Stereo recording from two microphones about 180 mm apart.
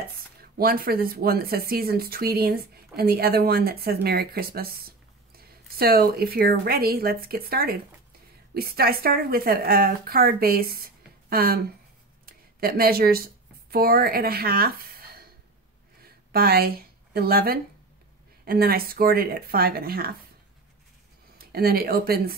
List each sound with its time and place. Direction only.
0.4 s speech: 55° right (ahead or behind)
16.3 s speech: 60° right (ahead or behind)
21.4 s speech: 55° right (ahead or behind)